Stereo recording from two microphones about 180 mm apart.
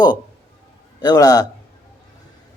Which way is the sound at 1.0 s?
20° left (ahead or behind).